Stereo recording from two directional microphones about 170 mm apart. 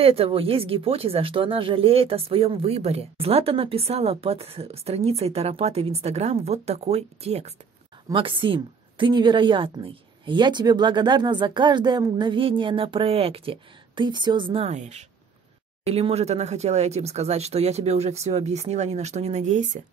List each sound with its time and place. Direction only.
0.0 s speech: 35° right (ahead or behind)